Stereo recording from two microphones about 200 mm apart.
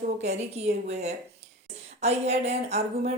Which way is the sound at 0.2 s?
35° right (ahead or behind).